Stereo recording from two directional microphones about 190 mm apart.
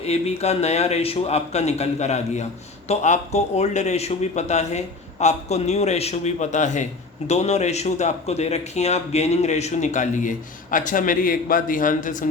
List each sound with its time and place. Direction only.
0.0 s a man's voice: 35° left (ahead or behind)